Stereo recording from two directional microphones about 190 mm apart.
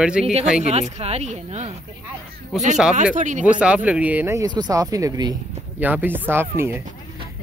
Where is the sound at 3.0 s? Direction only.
40° right (ahead or behind).